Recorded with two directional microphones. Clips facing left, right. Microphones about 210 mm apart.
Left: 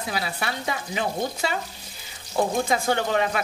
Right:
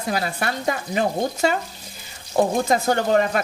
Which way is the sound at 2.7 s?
45° right (ahead or behind).